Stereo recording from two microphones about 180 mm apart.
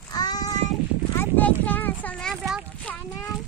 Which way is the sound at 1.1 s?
10° left (ahead or behind).